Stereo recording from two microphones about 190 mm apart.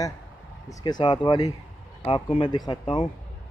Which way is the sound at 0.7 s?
20° left (ahead or behind).